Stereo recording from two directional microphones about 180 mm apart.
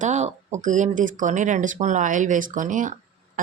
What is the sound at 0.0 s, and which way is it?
Speech, 40° right (ahead or behind).